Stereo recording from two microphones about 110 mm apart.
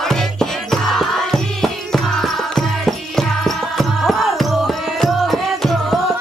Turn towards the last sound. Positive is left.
turn(degrees=0)  # may be behind; listen again after turning